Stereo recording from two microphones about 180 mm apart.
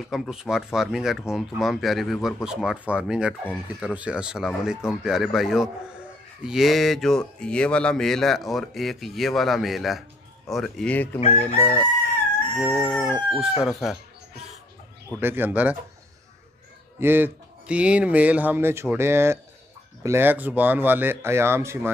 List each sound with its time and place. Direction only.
0.1 s speech: centre (ahead or behind)
11.1 s chicken: 35° left (ahead or behind)
12.7 s speech: centre (ahead or behind)
15.1 s speech: 10° right (ahead or behind)
17.0 s speech: 10° right (ahead or behind)